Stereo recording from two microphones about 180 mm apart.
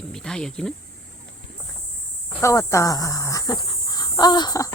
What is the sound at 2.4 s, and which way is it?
Speech, 15° left (ahead or behind).